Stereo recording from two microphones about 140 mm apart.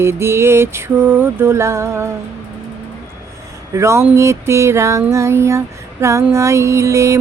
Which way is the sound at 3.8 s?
20° right (ahead or behind).